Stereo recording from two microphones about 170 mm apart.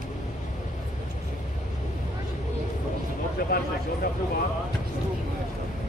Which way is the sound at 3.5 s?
60° left (ahead or behind).